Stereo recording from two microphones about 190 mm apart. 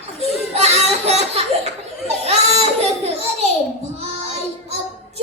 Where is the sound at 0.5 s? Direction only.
35° right (ahead or behind).